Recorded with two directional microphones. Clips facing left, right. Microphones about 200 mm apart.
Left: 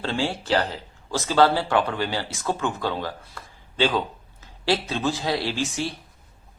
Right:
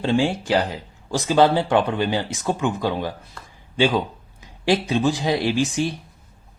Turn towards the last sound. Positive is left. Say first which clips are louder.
# right 6 dB
turn(degrees=-15)  # may be behind; listen again after turning